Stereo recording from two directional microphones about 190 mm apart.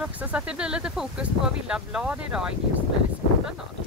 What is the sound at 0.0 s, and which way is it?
Speech, 5° right (ahead or behind).